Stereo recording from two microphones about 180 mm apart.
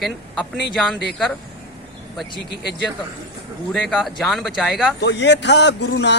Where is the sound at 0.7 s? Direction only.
Centre (ahead or behind).